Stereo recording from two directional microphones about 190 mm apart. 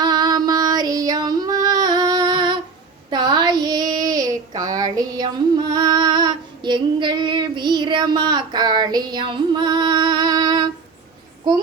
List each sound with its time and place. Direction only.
0.0 s female singing: 20° right (ahead or behind)
3.1 s child singing: 20° right (ahead or behind)